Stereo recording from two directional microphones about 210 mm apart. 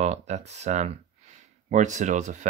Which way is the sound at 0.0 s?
30° right (ahead or behind).